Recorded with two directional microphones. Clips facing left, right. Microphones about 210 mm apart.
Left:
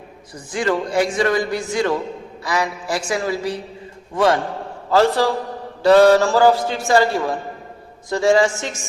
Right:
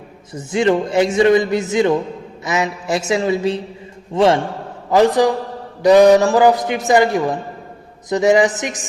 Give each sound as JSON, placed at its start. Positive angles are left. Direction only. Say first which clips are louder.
{"t": 0.3, "sound": "a man's voice", "louder": "right 5 dB", "side_deg": -25}